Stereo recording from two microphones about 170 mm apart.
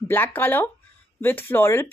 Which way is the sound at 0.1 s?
10° left (ahead or behind).